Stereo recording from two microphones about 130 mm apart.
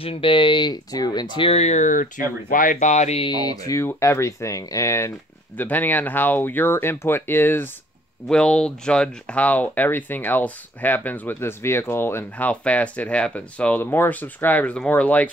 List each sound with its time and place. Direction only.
0.0 s speech: 45° left (ahead or behind)
1.5 s speech: 60° left (ahead or behind); by 2.0 s 75° left (ahead or behind)
2.5 s speech: 90° left; by 3.3 s 55° left (ahead or behind)
3.3 s speech: 30° left (ahead or behind); by 15.3 s 10° left (ahead or behind)